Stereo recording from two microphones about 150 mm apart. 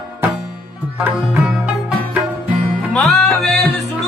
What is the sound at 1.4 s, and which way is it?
Music, centre (ahead or behind).